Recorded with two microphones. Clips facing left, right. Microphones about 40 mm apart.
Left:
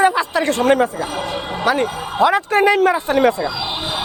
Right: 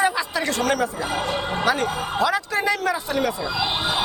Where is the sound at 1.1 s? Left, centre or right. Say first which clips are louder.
Left 1 dB; centre.